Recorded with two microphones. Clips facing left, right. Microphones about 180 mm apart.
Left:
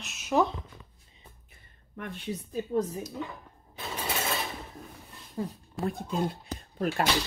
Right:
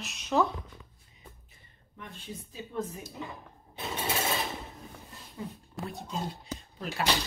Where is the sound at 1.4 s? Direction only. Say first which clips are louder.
Left 1 dB; 60° left (ahead or behind).